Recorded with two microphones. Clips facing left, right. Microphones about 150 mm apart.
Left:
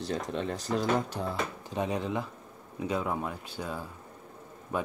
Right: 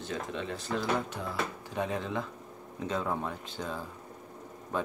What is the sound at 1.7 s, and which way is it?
Speech, 20° left (ahead or behind).